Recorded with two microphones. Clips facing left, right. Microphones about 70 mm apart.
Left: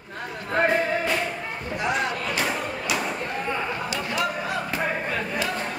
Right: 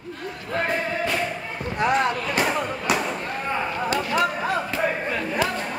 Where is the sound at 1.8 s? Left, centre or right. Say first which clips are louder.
Right 5 dB; right.